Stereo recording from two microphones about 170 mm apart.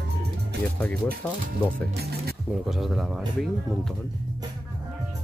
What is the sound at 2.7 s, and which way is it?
Speech, centre (ahead or behind).